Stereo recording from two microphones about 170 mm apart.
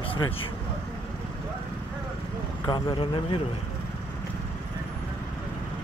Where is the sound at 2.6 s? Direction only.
25° left (ahead or behind).